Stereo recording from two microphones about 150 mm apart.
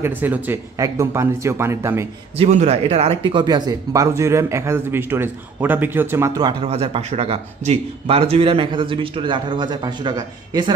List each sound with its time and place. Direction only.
0.0 s a man's voice: 10° right (ahead or behind)
2.3 s speech: 45° right (ahead or behind); by 6.5 s 20° right (ahead or behind)
6.6 s speech: 40° right (ahead or behind)